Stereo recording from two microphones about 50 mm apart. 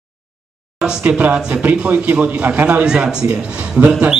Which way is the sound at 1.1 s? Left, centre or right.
Right.